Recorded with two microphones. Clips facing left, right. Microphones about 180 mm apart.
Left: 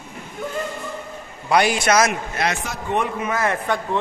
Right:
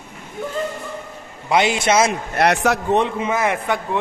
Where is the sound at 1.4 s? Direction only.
20° right (ahead or behind).